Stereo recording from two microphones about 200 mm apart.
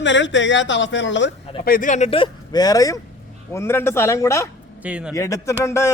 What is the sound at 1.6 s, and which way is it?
Speech, 45° left (ahead or behind).